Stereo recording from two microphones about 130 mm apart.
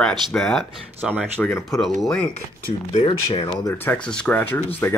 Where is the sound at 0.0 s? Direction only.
5° left (ahead or behind).